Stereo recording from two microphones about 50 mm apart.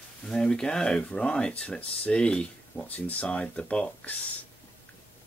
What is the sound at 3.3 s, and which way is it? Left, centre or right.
Speech, left.